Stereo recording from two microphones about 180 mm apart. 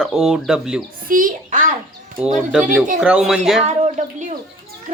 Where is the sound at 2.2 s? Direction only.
5° right (ahead or behind).